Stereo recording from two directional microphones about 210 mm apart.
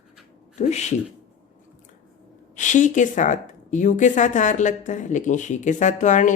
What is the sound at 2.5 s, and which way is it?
A woman's voice, 35° left (ahead or behind).